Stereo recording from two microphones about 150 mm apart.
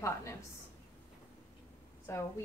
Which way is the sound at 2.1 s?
20° left (ahead or behind).